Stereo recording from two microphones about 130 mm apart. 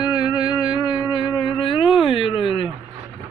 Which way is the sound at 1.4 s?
40° left (ahead or behind).